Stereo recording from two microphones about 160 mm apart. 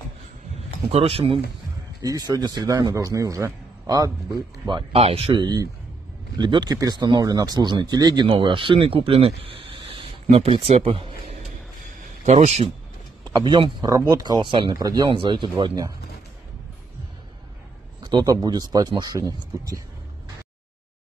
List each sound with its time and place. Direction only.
0.8 s speech: 35° right (ahead or behind)
2.0 s a man's voice: 25° right (ahead or behind); by 11.4 s 40° right (ahead or behind)
11.8 s a sound: 45° right (ahead or behind)
13.2 s a man's voice: 25° right (ahead or behind)
18.0 s a man's voice: 25° right (ahead or behind)